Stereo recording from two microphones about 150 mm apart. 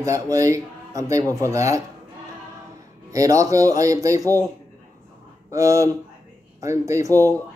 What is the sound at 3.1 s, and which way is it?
Speech, 20° right (ahead or behind).